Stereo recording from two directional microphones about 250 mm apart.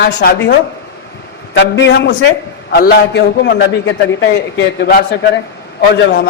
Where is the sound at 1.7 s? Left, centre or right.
Left.